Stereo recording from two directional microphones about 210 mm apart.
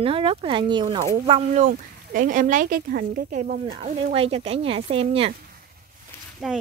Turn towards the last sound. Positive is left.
turn(degrees=0)  # may be behind; listen again after turning